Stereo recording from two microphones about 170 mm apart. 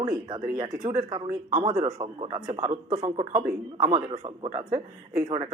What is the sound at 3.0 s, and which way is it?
Speech, 35° right (ahead or behind).